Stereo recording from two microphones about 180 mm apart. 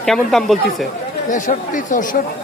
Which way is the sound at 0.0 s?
Centre (ahead or behind).